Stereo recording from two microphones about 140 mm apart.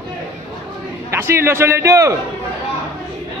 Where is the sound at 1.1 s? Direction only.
20° right (ahead or behind).